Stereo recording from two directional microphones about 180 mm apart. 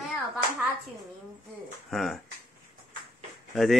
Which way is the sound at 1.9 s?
Centre (ahead or behind).